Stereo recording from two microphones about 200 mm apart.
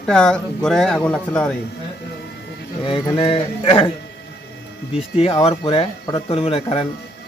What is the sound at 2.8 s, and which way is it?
Speech, 25° left (ahead or behind).